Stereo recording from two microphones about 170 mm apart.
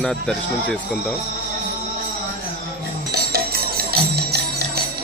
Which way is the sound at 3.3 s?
65° right (ahead or behind).